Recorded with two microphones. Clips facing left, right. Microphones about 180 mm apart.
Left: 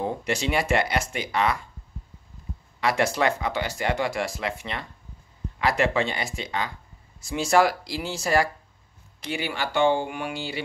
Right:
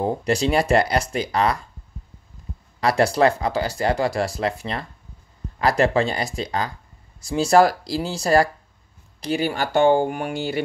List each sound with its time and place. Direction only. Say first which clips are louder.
0.0 s speech: right 6 dB; 35° right (ahead or behind)
2.8 s speech: right 5 dB; 35° right (ahead or behind)